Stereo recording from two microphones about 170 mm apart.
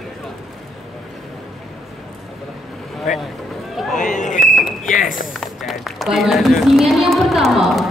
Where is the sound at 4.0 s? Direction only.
45° left (ahead or behind).